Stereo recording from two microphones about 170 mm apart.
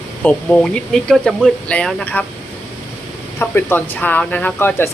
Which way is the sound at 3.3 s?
10° left (ahead or behind).